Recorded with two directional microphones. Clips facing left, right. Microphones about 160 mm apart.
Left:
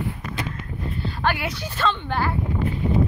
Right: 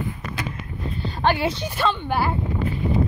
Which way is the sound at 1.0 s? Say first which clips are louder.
Right 4 dB; 20° right (ahead or behind).